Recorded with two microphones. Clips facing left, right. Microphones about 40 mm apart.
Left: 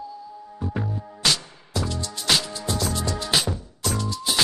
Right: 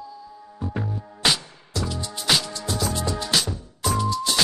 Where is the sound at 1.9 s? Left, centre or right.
Centre.